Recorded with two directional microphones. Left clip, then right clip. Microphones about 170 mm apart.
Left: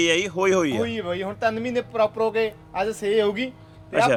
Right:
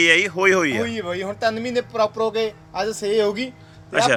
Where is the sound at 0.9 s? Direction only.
30° right (ahead or behind).